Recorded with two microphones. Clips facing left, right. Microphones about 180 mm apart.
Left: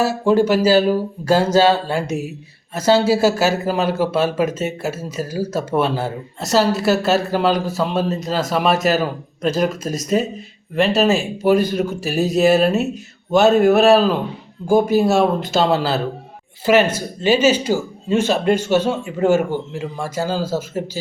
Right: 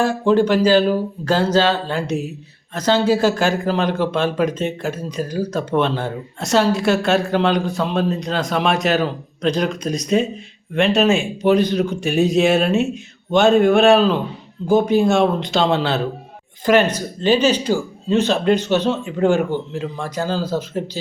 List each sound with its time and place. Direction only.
0.0 s speech: 10° left (ahead or behind)